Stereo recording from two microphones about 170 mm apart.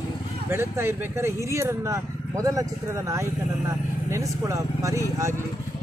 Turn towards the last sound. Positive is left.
turn(degrees=-15)  # may be behind; listen again after turning